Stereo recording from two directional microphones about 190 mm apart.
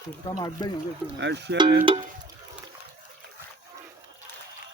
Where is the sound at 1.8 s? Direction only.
25° right (ahead or behind).